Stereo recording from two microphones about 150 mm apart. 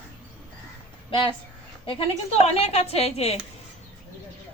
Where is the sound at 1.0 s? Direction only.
35° left (ahead or behind).